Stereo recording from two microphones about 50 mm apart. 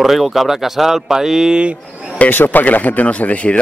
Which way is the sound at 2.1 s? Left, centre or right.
Left.